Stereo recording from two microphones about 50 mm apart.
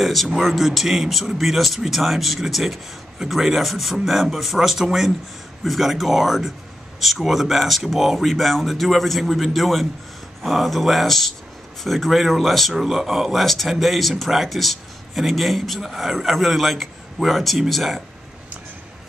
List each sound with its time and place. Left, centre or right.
0.0 s speech: centre